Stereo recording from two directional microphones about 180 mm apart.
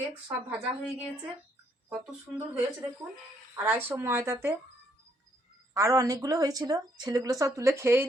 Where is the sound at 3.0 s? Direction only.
20° right (ahead or behind).